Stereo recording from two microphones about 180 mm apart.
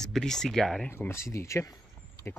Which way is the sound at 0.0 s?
5° left (ahead or behind).